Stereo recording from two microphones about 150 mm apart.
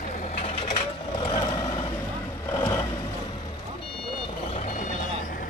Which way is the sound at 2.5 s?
30° left (ahead or behind).